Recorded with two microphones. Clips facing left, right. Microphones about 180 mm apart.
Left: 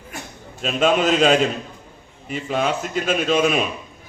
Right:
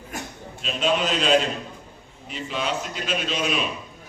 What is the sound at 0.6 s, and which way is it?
A man's voice, 50° left (ahead or behind).